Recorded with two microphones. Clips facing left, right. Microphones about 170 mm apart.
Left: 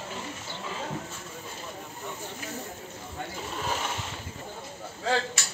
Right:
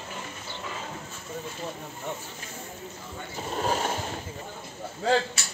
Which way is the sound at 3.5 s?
40° right (ahead or behind).